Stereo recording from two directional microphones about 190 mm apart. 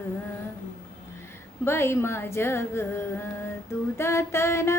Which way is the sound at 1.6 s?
15° left (ahead or behind).